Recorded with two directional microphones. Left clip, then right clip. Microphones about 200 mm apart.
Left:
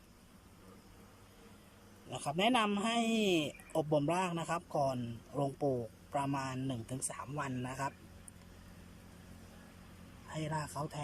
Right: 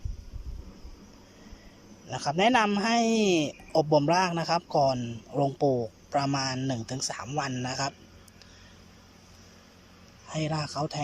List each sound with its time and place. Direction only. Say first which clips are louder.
2.0 s a man's voice: right 8 dB; centre (ahead or behind)
5.6 s speech: right 9 dB; 20° right (ahead or behind)
6.1 s a man's voice: right 8 dB; centre (ahead or behind)
10.2 s a man's voice: right 8 dB; 5° right (ahead or behind)